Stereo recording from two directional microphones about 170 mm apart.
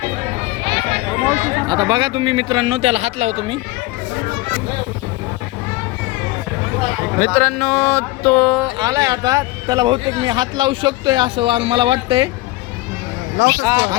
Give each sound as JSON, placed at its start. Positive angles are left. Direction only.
{"t": 1.3, "sound": "chatter", "side_deg": -50}
{"t": 1.6, "sound": "speech", "side_deg": -25}
{"t": 7.3, "sound": "a sound", "side_deg": 5}
{"t": 8.6, "sound": "speech", "side_deg": -20}
{"t": 13.4, "sound": "speech", "side_deg": 80}